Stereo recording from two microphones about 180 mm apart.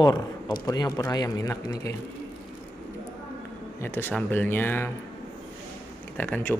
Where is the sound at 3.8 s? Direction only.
10° left (ahead or behind).